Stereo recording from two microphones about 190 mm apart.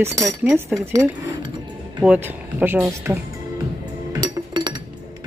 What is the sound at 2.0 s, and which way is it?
Speech, 10° right (ahead or behind).